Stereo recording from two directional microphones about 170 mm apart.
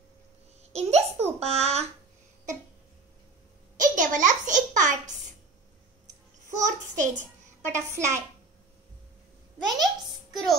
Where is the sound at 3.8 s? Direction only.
50° right (ahead or behind).